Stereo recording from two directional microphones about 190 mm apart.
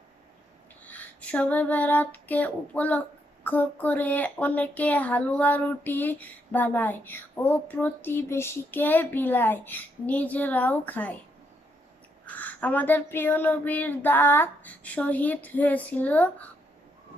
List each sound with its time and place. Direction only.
0.9 s female singing: 10° left (ahead or behind)
3.4 s speech: 10° left (ahead or behind)
12.2 s speech: 10° left (ahead or behind)